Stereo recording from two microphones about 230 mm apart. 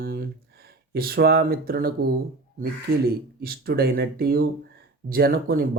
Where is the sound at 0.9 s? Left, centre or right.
Right.